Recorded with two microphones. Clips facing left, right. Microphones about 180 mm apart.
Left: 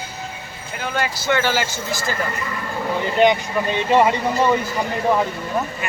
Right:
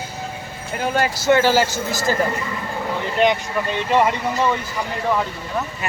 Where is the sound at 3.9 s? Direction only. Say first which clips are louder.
Left 2 dB; centre (ahead or behind).